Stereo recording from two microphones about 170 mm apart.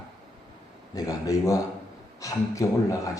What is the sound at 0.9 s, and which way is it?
A man's voice, 20° left (ahead or behind).